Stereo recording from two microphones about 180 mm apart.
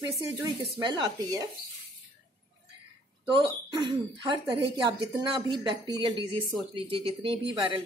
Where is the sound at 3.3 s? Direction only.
25° right (ahead or behind).